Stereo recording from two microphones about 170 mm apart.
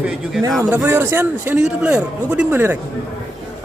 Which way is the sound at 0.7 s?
10° right (ahead or behind).